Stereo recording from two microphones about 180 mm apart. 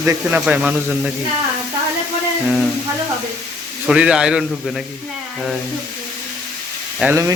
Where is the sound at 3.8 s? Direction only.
5° right (ahead or behind).